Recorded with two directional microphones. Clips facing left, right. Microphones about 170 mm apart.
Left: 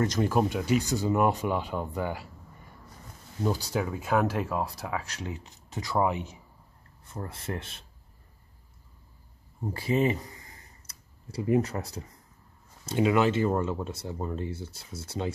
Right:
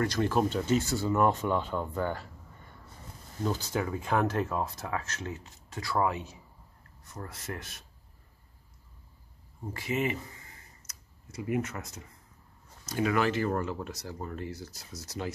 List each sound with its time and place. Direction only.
0.0 s speech: 15° left (ahead or behind)
3.4 s speech: 10° left (ahead or behind)
7.1 s speech: 30° left (ahead or behind)
9.8 s a sound: 35° left (ahead or behind)
12.8 s speech: 20° left (ahead or behind)